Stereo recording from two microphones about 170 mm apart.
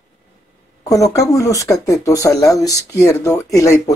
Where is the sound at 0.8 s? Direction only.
20° left (ahead or behind).